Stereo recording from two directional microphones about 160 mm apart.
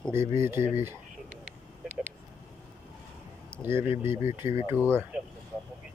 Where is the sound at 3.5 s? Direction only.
15° right (ahead or behind).